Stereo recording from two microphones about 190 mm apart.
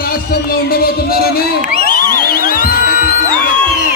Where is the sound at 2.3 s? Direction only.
50° left (ahead or behind).